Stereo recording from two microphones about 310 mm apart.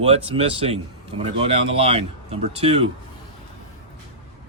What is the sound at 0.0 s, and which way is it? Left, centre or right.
A man's voice, centre.